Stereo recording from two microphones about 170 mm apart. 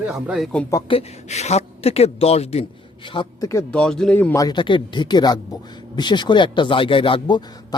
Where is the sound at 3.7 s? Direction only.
5° left (ahead or behind).